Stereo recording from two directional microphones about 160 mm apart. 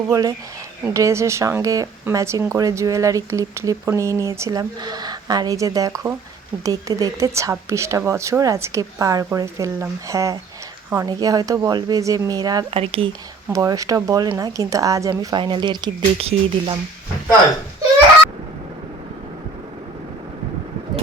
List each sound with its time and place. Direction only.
0.1 s speech: 20° right (ahead or behind)
12.7 s speech: 35° right (ahead or behind)
13.5 s speech: 20° right (ahead or behind)